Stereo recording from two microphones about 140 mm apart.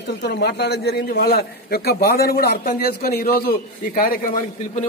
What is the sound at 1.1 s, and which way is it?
A man's voice, 90° left.